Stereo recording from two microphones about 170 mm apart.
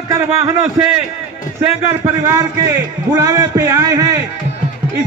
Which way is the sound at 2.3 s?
15° right (ahead or behind).